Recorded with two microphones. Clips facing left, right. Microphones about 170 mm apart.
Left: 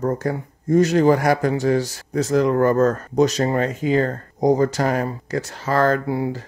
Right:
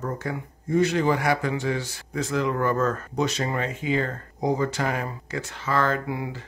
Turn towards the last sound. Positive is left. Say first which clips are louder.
# left 7 dB
turn(degrees=35)  # may be behind; listen again after turning